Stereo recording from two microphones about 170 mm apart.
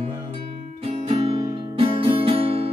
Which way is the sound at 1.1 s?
30° right (ahead or behind).